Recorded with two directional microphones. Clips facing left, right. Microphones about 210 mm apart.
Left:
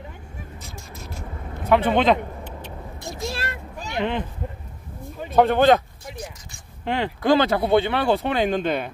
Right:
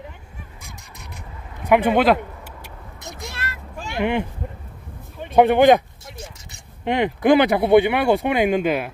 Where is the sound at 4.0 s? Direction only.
15° right (ahead or behind).